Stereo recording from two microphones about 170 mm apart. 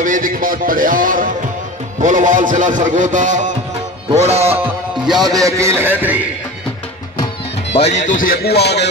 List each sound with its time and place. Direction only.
0.0 s a man's voice: 50° right (ahead or behind)
4.1 s music: 40° right (ahead or behind)
5.0 s a man's voice: centre (ahead or behind)
5.3 s a man's voice: 20° right (ahead or behind)
7.7 s speech: 40° left (ahead or behind); by 8.8 s 75° left (ahead or behind)